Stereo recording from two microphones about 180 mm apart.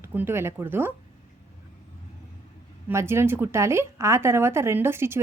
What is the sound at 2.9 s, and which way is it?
Speech, 15° right (ahead or behind).